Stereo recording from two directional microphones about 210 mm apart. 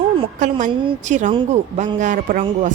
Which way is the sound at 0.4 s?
35° right (ahead or behind).